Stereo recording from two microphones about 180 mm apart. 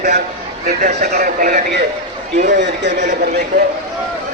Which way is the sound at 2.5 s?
70° right (ahead or behind).